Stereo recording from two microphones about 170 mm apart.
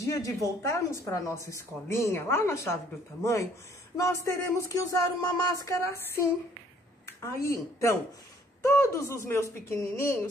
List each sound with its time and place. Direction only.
0.0 s a woman's voice: 20° left (ahead or behind)
3.9 s a woman's voice: 20° left (ahead or behind)